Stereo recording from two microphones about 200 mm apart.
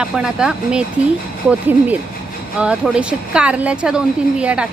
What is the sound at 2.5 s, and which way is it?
Speech, 5° right (ahead or behind).